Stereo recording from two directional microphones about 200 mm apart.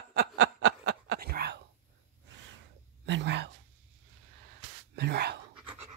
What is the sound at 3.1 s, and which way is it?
Whispering, 60° right (ahead or behind).